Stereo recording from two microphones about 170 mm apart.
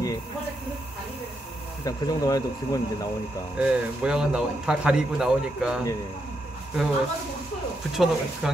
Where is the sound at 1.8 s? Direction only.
20° left (ahead or behind).